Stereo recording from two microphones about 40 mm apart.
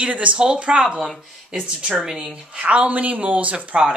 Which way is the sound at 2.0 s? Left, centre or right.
Right.